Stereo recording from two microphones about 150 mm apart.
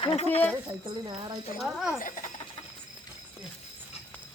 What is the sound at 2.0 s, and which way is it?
Speech, 60° left (ahead or behind).